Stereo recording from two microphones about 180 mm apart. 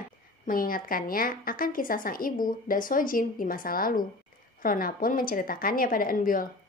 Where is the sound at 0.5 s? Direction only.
50° left (ahead or behind).